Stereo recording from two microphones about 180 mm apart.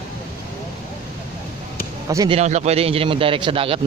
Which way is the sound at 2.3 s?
40° right (ahead or behind).